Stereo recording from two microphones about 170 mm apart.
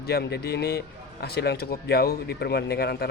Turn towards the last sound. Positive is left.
turn(degrees=70)  # may be behind; listen again after turning